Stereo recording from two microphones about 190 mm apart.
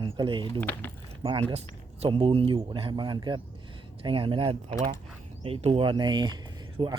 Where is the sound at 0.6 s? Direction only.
10° left (ahead or behind).